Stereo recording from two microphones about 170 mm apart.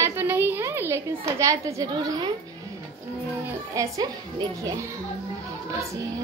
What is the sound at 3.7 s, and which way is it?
A woman's voice, 20° right (ahead or behind).